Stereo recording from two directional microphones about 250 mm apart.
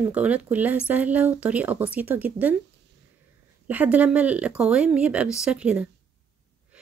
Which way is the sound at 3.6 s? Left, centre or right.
Centre.